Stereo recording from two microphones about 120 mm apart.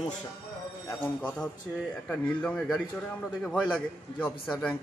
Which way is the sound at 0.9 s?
15° left (ahead or behind).